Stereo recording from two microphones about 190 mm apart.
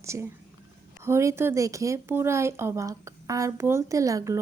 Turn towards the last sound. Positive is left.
turn(degrees=-15)  # may be behind; listen again after turning